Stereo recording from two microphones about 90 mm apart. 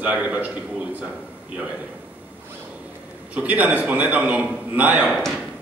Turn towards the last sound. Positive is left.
turn(degrees=-5)  # may be behind; listen again after turning